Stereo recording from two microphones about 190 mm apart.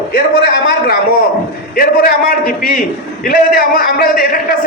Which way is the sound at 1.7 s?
50° left (ahead or behind).